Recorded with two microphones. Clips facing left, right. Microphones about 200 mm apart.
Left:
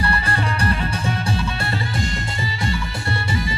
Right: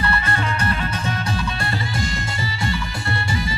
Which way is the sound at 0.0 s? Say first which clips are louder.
Even; 35° left (ahead or behind).